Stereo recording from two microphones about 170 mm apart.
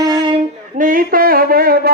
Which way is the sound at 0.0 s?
20° right (ahead or behind).